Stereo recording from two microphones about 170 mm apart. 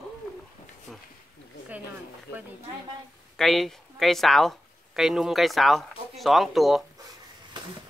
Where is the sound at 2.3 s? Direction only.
70° left (ahead or behind).